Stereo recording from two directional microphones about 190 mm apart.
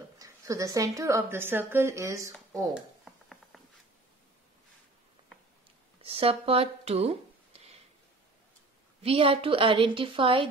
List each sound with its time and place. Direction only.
0.2 s a woman's voice: 15° right (ahead or behind)
2.7 s a sound: centre (ahead or behind)
6.0 s speech: 30° right (ahead or behind)
9.0 s a woman's voice: 30° right (ahead or behind)